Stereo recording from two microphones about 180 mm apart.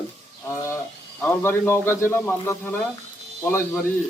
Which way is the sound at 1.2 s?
10° left (ahead or behind).